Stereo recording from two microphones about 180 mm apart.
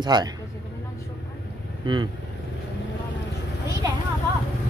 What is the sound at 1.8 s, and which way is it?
Speech, 25° right (ahead or behind).